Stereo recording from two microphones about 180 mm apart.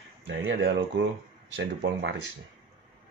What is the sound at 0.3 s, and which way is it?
Speech, 90° right.